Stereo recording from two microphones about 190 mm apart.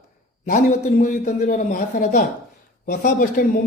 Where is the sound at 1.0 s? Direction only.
40° left (ahead or behind).